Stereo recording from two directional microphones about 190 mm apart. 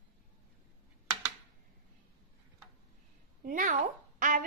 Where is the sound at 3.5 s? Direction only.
45° right (ahead or behind).